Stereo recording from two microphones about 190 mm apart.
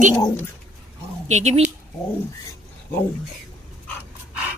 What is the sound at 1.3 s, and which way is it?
Speech, 35° right (ahead or behind).